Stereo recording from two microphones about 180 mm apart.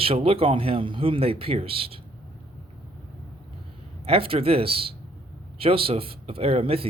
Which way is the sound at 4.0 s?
30° right (ahead or behind).